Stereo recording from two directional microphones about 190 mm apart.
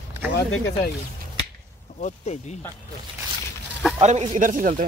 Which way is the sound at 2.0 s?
35° left (ahead or behind).